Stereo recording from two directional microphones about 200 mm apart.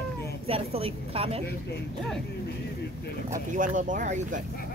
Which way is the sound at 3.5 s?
40° right (ahead or behind).